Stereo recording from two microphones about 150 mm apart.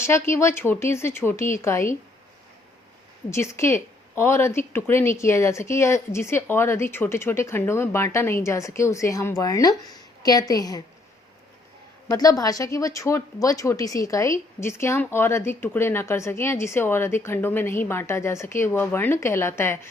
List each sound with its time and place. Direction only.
0.0 s speech: 15° left (ahead or behind)
3.2 s speech: 20° left (ahead or behind)
12.1 s speech: 25° left (ahead or behind)